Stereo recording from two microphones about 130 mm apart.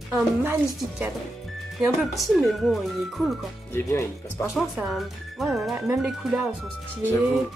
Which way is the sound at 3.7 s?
20° left (ahead or behind).